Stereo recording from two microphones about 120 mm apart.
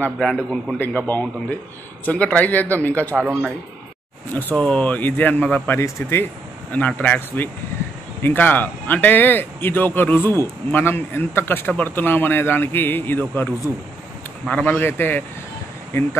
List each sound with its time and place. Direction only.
0.0 s a man's voice: 5° left (ahead or behind)
0.7 s a man's voice: 15° left (ahead or behind)
3.2 s speech: 10° right (ahead or behind)
4.3 s a man's voice: 15° left (ahead or behind)
14.5 s a man's voice: 10° left (ahead or behind)